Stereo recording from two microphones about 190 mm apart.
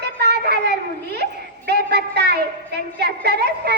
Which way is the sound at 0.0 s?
60° right (ahead or behind).